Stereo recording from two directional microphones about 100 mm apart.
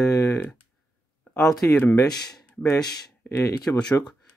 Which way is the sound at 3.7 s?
20° left (ahead or behind).